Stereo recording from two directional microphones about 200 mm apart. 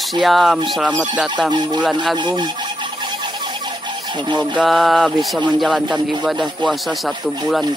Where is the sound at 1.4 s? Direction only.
20° right (ahead or behind).